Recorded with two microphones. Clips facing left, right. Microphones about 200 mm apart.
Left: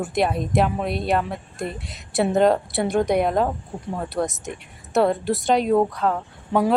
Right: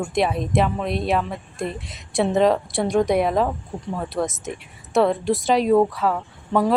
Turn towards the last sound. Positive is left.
turn(degrees=10)  # may be behind; listen again after turning